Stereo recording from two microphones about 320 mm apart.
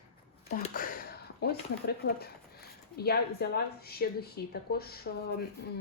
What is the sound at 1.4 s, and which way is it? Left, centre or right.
Speech, left.